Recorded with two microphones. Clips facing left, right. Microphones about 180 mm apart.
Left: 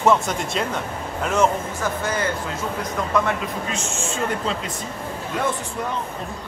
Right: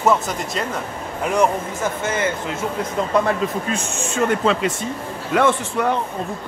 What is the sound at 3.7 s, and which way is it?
Speech, 65° right (ahead or behind).